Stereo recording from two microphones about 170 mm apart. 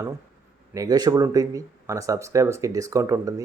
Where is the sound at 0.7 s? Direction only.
20° right (ahead or behind).